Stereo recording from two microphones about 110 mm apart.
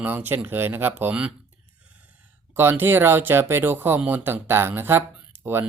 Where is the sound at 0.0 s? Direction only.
15° right (ahead or behind).